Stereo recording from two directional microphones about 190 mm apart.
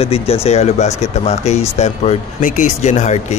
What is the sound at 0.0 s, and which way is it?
Speech, 30° left (ahead or behind).